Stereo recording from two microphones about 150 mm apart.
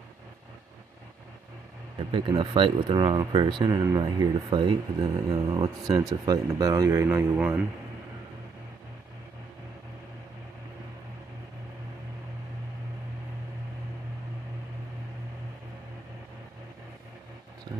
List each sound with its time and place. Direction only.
2.0 s speech: 35° right (ahead or behind); by 7.6 s 10° right (ahead or behind)